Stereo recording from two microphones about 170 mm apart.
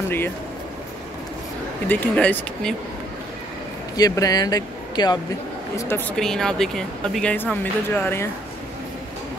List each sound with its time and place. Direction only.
1.9 s speech: 5° left (ahead or behind)
3.9 s speech: 20° left (ahead or behind)
5.8 s speech: 15° left (ahead or behind)